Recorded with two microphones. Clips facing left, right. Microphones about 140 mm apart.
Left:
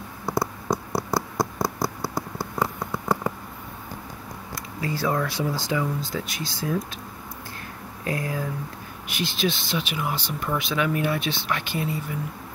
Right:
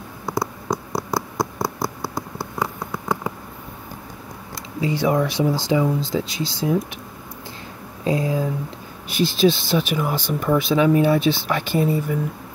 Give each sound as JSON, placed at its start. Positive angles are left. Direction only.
{"t": 0.3, "sound": "a sound", "side_deg": 5}
{"t": 4.7, "sound": "speech", "side_deg": -20}
{"t": 8.0, "sound": "speech", "side_deg": -20}
{"t": 9.1, "sound": "speech", "side_deg": -35}
{"t": 10.6, "sound": "speech", "side_deg": -35}